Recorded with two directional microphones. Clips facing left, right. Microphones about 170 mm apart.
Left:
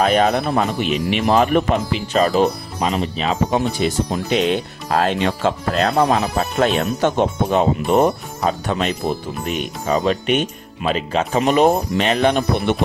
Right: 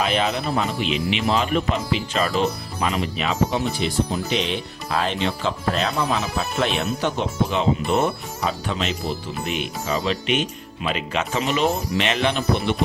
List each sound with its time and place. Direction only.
0.0 s speech: 45° left (ahead or behind)
4.1 s speech: 45° left (ahead or behind)
10.8 s speech: 35° left (ahead or behind)
11.3 s speech: 50° left (ahead or behind)